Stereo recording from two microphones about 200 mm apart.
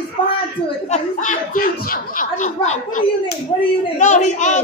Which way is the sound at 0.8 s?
35° left (ahead or behind).